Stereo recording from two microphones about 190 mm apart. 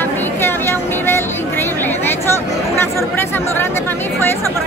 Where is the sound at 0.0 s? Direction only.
10° left (ahead or behind).